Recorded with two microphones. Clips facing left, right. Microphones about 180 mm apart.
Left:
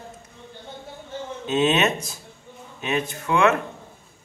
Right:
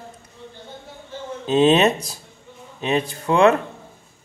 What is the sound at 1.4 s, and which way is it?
Speech, 30° right (ahead or behind).